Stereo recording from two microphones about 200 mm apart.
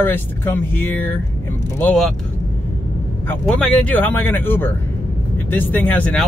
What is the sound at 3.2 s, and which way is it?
Speech, 5° left (ahead or behind).